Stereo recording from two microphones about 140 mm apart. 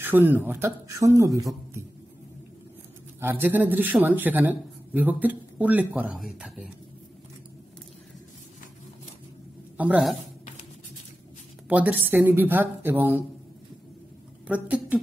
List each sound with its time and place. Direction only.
0.0 s speech: 15° right (ahead or behind)
3.2 s speech: 15° right (ahead or behind)
9.8 s speech: 10° right (ahead or behind)
11.7 s speech: 15° right (ahead or behind)
14.5 s speech: 10° right (ahead or behind)